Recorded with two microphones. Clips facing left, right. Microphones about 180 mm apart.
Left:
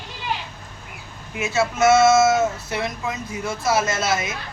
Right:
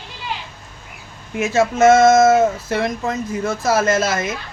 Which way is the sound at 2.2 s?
55° right (ahead or behind).